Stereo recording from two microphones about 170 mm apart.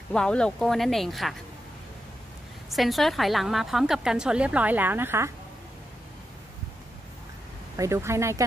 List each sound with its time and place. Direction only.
0.1 s a woman's voice: 5° left (ahead or behind)
2.7 s a woman's voice: centre (ahead or behind)
7.7 s speech: 20° right (ahead or behind)